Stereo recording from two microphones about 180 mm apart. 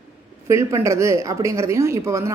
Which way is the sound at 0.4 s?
15° right (ahead or behind).